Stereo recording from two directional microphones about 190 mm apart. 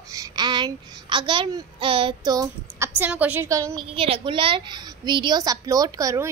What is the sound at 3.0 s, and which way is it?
Speech, 10° right (ahead or behind).